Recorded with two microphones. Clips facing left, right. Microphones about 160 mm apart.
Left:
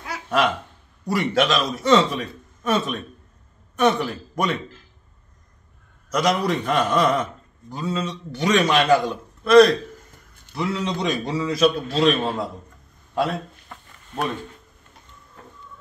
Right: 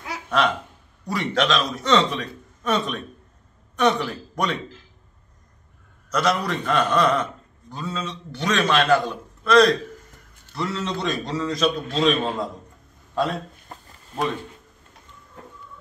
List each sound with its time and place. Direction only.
1.0 s a man's voice: 10° left (ahead or behind)
6.0 s a man's voice: 10° left (ahead or behind)
13.7 s a sound: 40° right (ahead or behind)